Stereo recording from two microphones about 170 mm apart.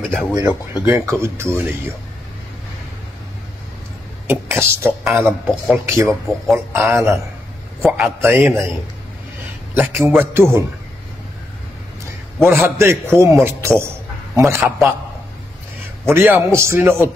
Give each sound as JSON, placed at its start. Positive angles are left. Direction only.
{"t": 0.3, "sound": "a man's voice", "side_deg": -20}
{"t": 4.3, "sound": "a man's voice", "side_deg": -15}
{"t": 5.2, "sound": "a man's voice", "side_deg": 0}
{"t": 5.9, "sound": "a man's voice", "side_deg": -20}
{"t": 9.8, "sound": "a man's voice", "side_deg": -10}
{"t": 12.4, "sound": "a man's voice", "side_deg": -15}
{"t": 16.1, "sound": "a man's voice", "side_deg": -15}